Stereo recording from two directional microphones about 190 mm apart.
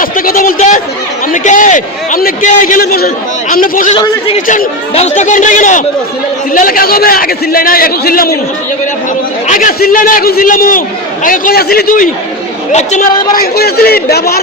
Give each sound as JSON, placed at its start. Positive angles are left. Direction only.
{"t": 0.0, "sound": "a sound", "side_deg": 50}
{"t": 1.3, "sound": "a man's voice", "side_deg": 45}
{"t": 9.5, "sound": "a man's voice", "side_deg": 45}
{"t": 12.7, "sound": "speech", "side_deg": 40}
{"t": 13.3, "sound": "a man's voice", "side_deg": 55}